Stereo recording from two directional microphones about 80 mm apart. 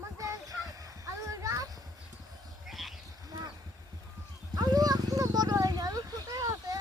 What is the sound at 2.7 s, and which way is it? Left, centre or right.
Sheep, centre.